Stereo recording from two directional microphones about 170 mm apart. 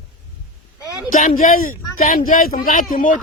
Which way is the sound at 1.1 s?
45° left (ahead or behind).